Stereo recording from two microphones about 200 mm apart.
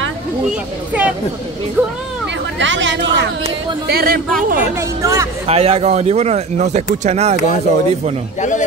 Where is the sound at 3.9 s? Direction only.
50° right (ahead or behind).